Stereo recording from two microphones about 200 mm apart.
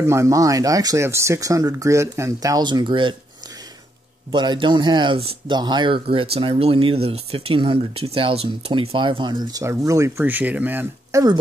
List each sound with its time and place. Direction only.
0.0 s speech: 15° right (ahead or behind)
4.3 s speech: 25° right (ahead or behind)